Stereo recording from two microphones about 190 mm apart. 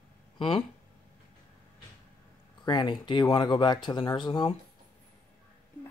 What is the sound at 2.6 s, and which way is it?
Speech, 25° left (ahead or behind).